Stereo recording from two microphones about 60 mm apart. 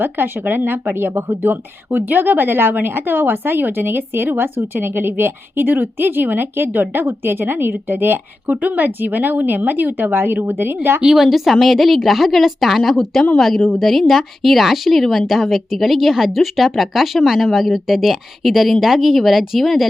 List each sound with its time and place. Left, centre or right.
0.0 s speech: right
11.0 s speech: centre